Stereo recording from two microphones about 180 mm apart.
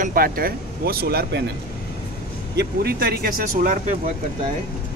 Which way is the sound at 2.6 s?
60° right (ahead or behind).